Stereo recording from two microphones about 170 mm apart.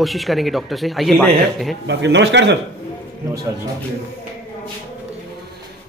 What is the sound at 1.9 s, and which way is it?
Speech, 90° right.